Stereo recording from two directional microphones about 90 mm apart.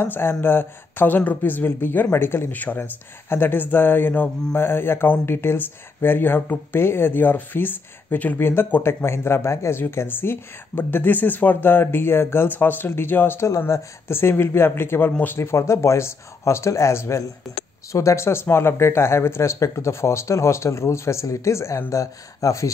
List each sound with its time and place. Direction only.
0.0 s speech: 25° left (ahead or behind)